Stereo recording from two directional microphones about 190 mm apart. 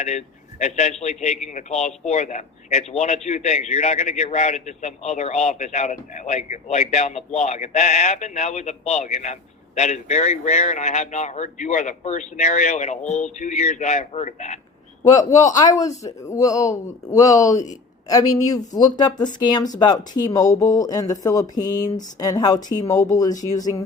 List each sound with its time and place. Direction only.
0.0 s a man's voice: 35° left (ahead or behind)
15.0 s a man's voice: 20° left (ahead or behind)